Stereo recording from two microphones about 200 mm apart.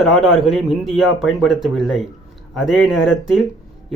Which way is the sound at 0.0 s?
Centre (ahead or behind).